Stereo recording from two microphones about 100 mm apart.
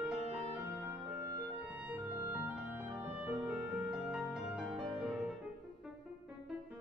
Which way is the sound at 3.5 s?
5° right (ahead or behind).